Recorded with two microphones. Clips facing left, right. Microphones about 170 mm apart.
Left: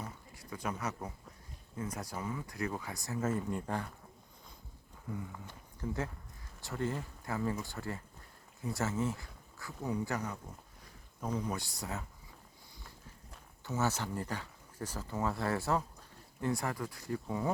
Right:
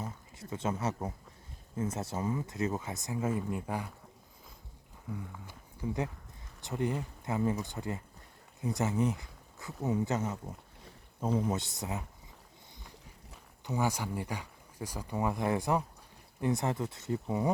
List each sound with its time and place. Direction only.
0.3 s speech: 25° right (ahead or behind); by 3.9 s 10° right (ahead or behind)
5.1 s a sound: centre (ahead or behind)
5.8 s speech: 15° right (ahead or behind)
13.7 s speech: 15° right (ahead or behind)